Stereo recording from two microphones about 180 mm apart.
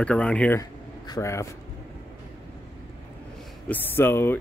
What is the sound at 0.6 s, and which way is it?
Speech, 20° left (ahead or behind).